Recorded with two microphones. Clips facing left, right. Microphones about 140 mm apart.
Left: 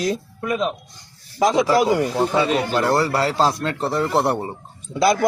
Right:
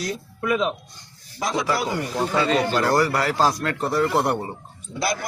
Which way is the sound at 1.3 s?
90° left.